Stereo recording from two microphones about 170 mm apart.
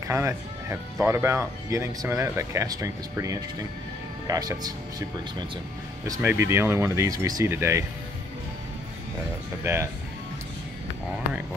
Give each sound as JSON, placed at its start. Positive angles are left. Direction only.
{"t": 0.1, "sound": "speech", "side_deg": -15}
{"t": 6.2, "sound": "speech", "side_deg": -15}
{"t": 9.6, "sound": "speech", "side_deg": -15}